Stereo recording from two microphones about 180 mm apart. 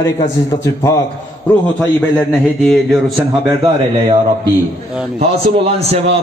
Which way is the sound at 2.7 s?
Centre (ahead or behind).